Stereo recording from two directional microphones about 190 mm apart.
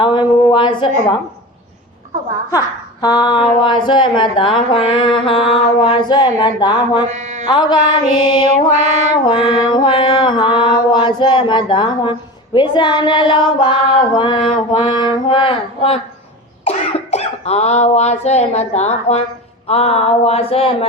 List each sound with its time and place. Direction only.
0.0 s a sound: 25° left (ahead or behind)
2.5 s speech: 20° left (ahead or behind)
7.1 s mantra: 35° right (ahead or behind)
7.4 s speech: 25° left (ahead or behind)
8.4 s mantra: 40° right (ahead or behind)
9.2 s speech: 25° left (ahead or behind)
19.6 s a sound: 35° left (ahead or behind)